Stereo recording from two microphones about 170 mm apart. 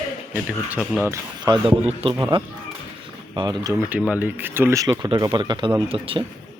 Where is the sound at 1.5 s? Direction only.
35° right (ahead or behind).